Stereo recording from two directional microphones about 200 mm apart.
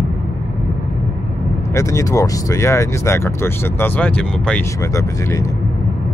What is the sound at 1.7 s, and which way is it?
Speech, 15° left (ahead or behind).